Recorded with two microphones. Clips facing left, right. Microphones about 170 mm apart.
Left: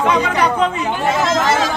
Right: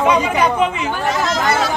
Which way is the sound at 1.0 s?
25° left (ahead or behind).